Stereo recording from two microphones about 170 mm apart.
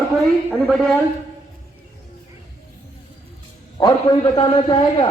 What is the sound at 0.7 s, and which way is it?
Speech, centre (ahead or behind).